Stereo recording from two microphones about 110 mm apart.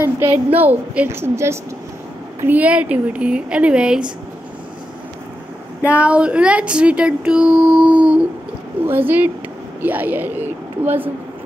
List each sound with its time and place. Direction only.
0.0 s a woman's voice: 20° right (ahead or behind)
5.9 s speech: 15° right (ahead or behind)